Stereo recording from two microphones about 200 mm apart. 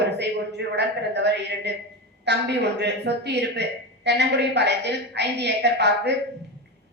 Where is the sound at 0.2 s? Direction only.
60° right (ahead or behind).